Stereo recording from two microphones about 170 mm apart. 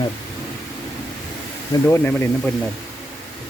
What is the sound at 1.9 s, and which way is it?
Speech, 15° left (ahead or behind).